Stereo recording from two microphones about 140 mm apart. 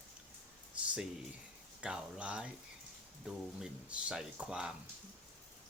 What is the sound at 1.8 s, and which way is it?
Speech, 5° right (ahead or behind).